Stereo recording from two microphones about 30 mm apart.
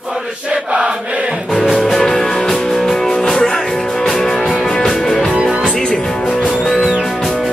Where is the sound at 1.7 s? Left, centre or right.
Centre.